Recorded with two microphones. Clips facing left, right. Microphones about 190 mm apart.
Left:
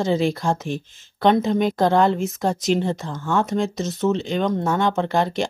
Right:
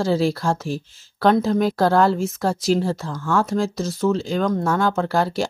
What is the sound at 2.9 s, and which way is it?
Speech, 20° left (ahead or behind).